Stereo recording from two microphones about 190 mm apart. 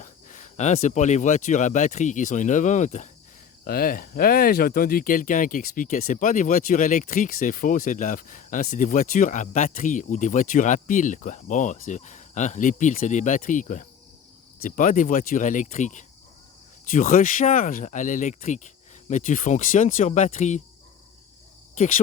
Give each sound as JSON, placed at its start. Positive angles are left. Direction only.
{"t": 0.0, "sound": "speech", "side_deg": 40}
{"t": 3.6, "sound": "speech", "side_deg": 50}
{"t": 21.8, "sound": "speech", "side_deg": 45}